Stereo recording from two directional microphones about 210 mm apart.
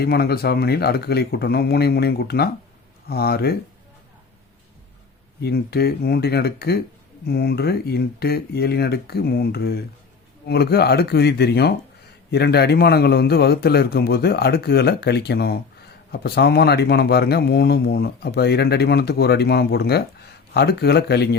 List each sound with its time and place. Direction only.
0.0 s speech: 50° left (ahead or behind)
5.4 s speech: 50° left (ahead or behind)